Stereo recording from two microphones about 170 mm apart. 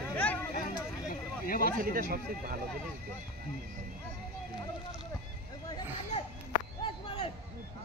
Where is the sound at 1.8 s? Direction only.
65° right (ahead or behind).